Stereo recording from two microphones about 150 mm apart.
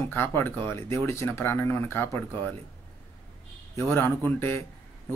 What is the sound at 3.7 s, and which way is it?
Speech, 15° left (ahead or behind).